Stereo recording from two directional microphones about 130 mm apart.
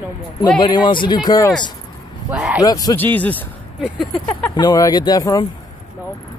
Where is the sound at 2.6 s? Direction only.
30° left (ahead or behind).